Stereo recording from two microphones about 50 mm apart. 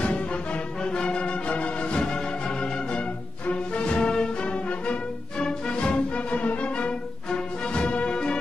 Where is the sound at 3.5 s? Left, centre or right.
Left.